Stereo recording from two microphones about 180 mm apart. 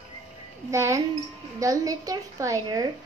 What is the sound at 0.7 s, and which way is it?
A woman's voice, 15° right (ahead or behind).